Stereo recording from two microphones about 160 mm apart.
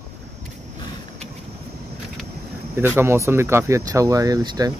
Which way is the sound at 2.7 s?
15° right (ahead or behind).